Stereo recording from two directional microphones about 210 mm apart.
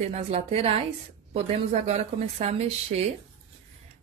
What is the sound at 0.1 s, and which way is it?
A woman's voice, 30° right (ahead or behind).